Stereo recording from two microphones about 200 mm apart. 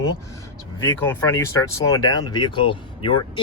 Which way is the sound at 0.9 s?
15° left (ahead or behind).